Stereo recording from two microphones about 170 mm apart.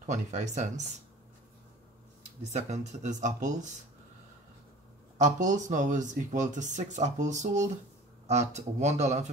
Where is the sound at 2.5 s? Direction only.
40° right (ahead or behind).